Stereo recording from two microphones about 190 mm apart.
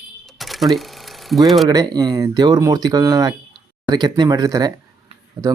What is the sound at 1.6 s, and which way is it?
Speech, 20° right (ahead or behind).